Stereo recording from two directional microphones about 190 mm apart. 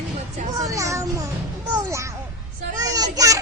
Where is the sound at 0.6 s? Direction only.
15° right (ahead or behind).